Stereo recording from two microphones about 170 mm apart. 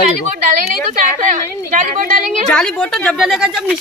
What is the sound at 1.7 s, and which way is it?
Speech, 50° right (ahead or behind).